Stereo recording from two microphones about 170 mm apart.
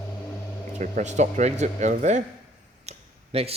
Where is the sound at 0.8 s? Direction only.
45° right (ahead or behind).